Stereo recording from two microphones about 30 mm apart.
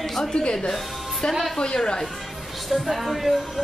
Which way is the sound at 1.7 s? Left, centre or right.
Left.